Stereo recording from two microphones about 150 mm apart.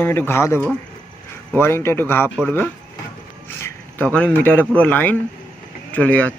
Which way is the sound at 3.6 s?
10° left (ahead or behind).